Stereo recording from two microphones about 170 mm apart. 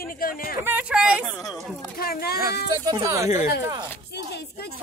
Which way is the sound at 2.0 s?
65° left (ahead or behind).